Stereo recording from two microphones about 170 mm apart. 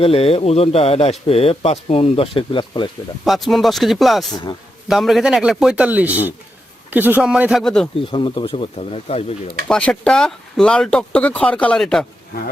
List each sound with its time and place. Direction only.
0.0 s speech: 35° left (ahead or behind)
3.2 s a man's voice: centre (ahead or behind)
7.9 s speech: 30° left (ahead or behind)
9.6 s speech: 5° left (ahead or behind)